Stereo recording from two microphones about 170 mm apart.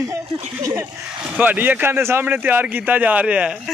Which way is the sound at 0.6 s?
20° right (ahead or behind).